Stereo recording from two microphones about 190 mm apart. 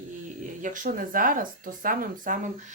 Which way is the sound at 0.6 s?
45° right (ahead or behind).